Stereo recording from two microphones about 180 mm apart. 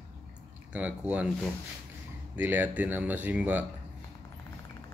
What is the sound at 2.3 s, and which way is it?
Speech, 10° right (ahead or behind).